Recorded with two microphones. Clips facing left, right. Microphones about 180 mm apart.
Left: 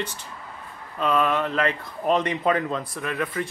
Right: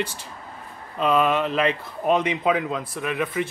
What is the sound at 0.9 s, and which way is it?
Speech, 15° right (ahead or behind).